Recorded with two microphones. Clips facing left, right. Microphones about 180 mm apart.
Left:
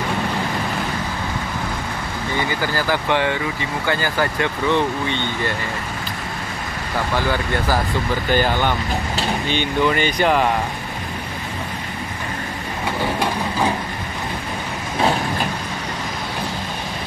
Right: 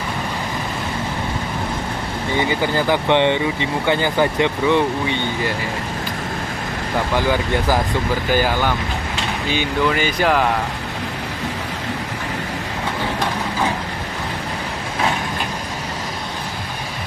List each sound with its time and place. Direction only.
2.3 s speech: 20° right (ahead or behind)
7.2 s speech: 15° right (ahead or behind)